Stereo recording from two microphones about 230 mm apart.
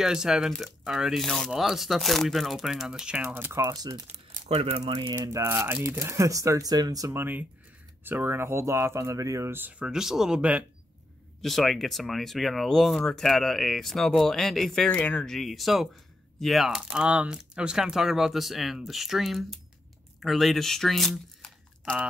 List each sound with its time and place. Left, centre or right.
0.0 s speech: centre
4.1 s speech: right
5.1 s speech: centre